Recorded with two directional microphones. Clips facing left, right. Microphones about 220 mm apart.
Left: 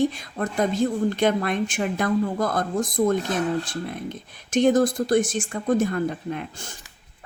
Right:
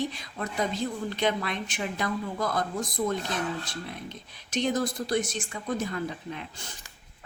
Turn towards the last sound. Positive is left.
turn(degrees=50)  # may be behind; listen again after turning